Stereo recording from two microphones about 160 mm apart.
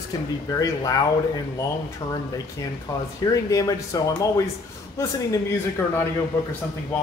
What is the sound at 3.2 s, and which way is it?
A man's voice, 20° left (ahead or behind).